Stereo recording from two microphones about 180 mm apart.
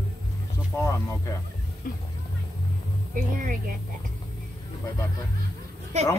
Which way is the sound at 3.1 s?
50° right (ahead or behind).